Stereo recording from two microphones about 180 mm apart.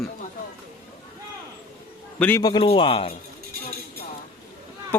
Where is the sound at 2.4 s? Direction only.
25° left (ahead or behind).